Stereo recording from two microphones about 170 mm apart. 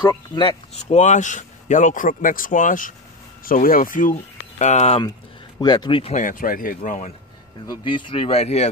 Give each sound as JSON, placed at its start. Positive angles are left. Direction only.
{"t": 0.4, "sound": "speech", "side_deg": 35}
{"t": 5.6, "sound": "speech", "side_deg": 25}
{"t": 6.1, "sound": "speech", "side_deg": 50}
{"t": 7.6, "sound": "speech", "side_deg": 25}